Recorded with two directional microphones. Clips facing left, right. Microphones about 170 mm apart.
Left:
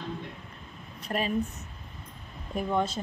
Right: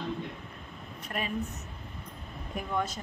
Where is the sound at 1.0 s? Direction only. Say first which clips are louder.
Left 5 dB; 30° left (ahead or behind).